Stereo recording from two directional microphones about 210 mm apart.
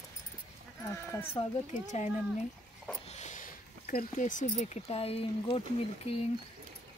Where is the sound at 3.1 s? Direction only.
35° left (ahead or behind).